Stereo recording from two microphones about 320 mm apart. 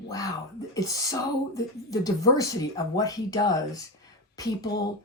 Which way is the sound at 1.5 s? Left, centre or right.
Centre.